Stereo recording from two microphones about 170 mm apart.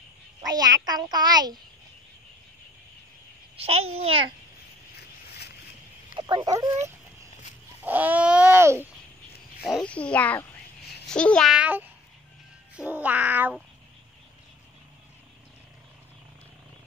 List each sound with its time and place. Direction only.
0.4 s a child's voice: 25° right (ahead or behind)
3.5 s a child's voice: 35° right (ahead or behind)
6.1 s speech: 25° right (ahead or behind)
7.8 s babbling: 10° right (ahead or behind)
9.6 s a child's voice: centre (ahead or behind)
12.7 s babbling: 10° right (ahead or behind)